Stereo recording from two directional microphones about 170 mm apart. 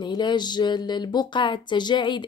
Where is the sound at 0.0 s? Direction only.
25° left (ahead or behind).